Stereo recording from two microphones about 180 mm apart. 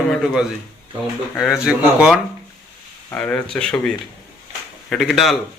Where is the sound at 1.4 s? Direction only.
5° right (ahead or behind).